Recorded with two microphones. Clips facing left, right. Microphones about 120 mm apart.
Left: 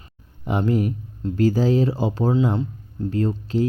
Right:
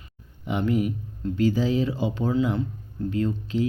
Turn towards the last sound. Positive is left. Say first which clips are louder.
# left 3 dB
turn(degrees=40)  # may be behind; listen again after turning